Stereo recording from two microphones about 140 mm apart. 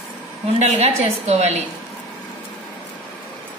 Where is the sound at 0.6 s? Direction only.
50° right (ahead or behind).